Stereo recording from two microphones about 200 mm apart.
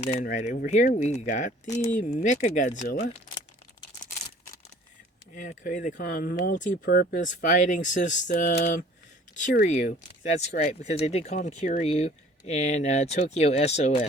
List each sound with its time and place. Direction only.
0.0 s speech: 35° left (ahead or behind)
5.3 s speech: 40° left (ahead or behind)